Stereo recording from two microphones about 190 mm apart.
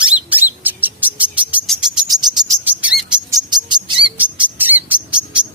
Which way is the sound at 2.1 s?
20° right (ahead or behind).